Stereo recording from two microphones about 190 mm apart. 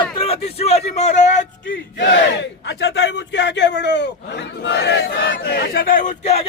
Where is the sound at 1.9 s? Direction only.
65° left (ahead or behind).